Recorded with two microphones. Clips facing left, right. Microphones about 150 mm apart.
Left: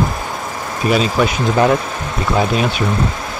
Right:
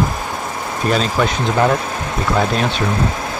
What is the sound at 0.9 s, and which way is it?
Speech, 5° left (ahead or behind).